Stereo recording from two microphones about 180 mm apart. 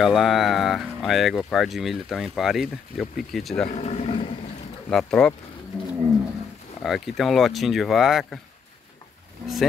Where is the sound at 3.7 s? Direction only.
40° left (ahead or behind).